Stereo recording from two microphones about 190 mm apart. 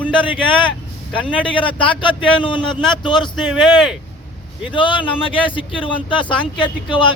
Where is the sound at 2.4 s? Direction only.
25° left (ahead or behind).